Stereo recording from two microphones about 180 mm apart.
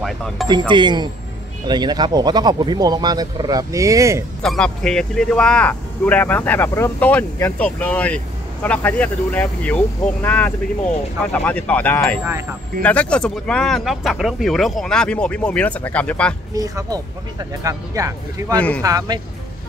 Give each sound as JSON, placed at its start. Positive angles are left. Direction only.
{"t": 0.0, "sound": "speech", "side_deg": 0}
{"t": 0.5, "sound": "speech", "side_deg": -25}
{"t": 4.4, "sound": "speech", "side_deg": 5}
{"t": 16.5, "sound": "speech", "side_deg": -20}